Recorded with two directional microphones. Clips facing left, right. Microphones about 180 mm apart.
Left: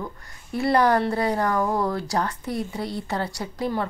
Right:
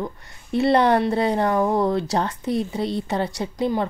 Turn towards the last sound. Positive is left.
turn(degrees=-20)  # may be behind; listen again after turning